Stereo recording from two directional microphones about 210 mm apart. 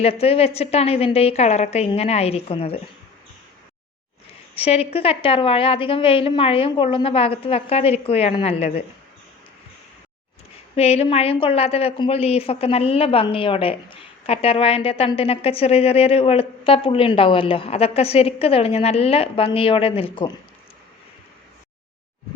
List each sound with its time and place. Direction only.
0.0 s a woman's voice: 30° left (ahead or behind)
4.5 s a woman's voice: 30° left (ahead or behind)
10.8 s a woman's voice: 30° left (ahead or behind)